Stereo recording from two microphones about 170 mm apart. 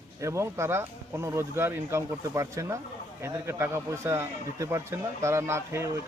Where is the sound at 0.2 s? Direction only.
15° right (ahead or behind).